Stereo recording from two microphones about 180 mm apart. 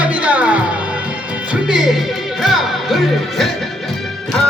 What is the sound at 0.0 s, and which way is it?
Music, 10° right (ahead or behind).